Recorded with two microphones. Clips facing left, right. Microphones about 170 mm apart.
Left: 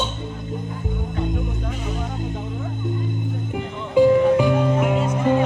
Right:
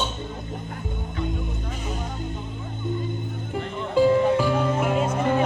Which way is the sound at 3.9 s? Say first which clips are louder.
Left 4 dB; 15° left (ahead or behind).